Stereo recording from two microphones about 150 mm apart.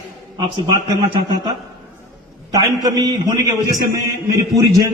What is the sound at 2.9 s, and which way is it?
A man's voice, 30° right (ahead or behind).